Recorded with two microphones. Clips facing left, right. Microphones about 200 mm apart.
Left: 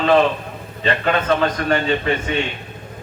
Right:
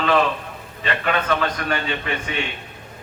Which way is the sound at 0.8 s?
30° left (ahead or behind).